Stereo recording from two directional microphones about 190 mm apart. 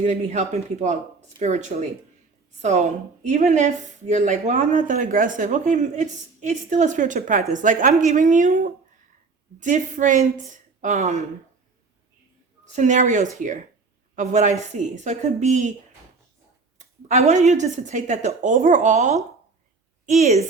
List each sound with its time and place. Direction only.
0.0 s speech: 40° right (ahead or behind)
12.7 s speech: 40° right (ahead or behind)
16.7 s speech: 40° right (ahead or behind)